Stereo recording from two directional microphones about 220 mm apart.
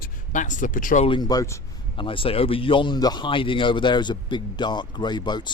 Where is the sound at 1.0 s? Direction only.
20° left (ahead or behind).